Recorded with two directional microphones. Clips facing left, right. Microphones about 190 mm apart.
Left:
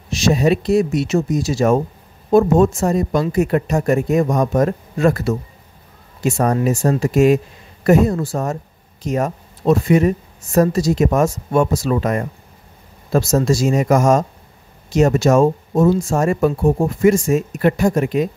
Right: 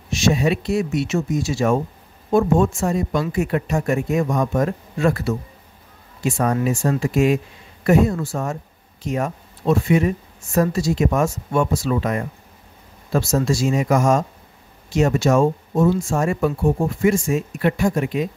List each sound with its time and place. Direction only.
0.1 s speech: 35° left (ahead or behind)